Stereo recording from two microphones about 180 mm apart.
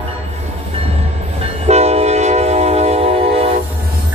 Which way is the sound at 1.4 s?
35° right (ahead or behind).